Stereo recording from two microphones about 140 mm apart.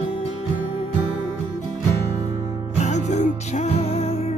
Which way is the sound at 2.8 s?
55° left (ahead or behind).